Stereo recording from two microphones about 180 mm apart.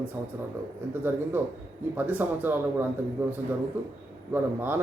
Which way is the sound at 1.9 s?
10° right (ahead or behind).